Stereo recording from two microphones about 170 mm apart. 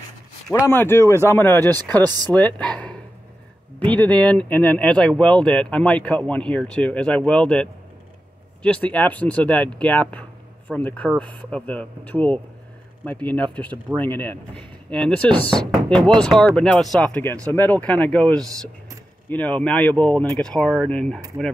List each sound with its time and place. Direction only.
0.7 s speech: 15° left (ahead or behind)
2.0 s speech: 25° right (ahead or behind)
2.3 s speech: 5° left (ahead or behind)